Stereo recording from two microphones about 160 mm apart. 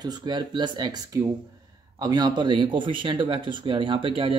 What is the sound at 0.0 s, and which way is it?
Speech, 25° right (ahead or behind).